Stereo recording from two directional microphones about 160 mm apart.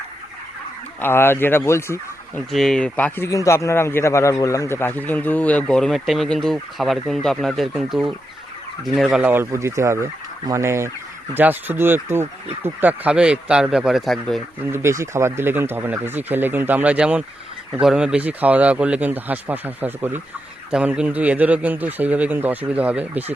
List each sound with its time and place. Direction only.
1.0 s speech: 15° left (ahead or behind)
2.5 s speech: centre (ahead or behind)
14.6 s speech: 15° right (ahead or behind)